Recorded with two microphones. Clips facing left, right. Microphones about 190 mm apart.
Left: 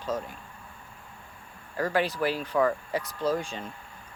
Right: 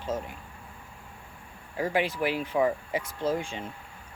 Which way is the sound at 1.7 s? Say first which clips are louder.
Left 1 dB; 15° right (ahead or behind).